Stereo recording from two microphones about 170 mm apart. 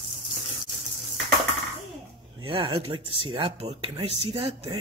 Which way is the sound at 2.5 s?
30° right (ahead or behind).